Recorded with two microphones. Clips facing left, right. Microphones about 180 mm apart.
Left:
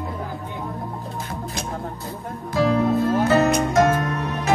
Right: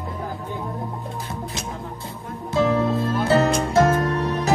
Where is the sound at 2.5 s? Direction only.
25° right (ahead or behind).